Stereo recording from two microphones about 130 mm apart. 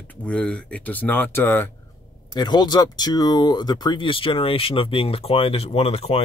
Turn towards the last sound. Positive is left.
turn(degrees=50)  # may be behind; listen again after turning